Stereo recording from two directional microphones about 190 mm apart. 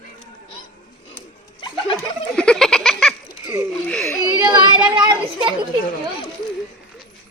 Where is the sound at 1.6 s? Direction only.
25° left (ahead or behind).